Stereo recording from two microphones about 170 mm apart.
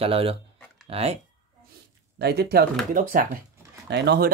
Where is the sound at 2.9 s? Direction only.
55° right (ahead or behind).